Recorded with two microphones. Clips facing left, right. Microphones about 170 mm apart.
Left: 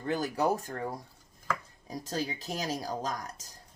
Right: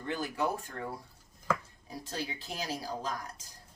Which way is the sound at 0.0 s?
40° left (ahead or behind).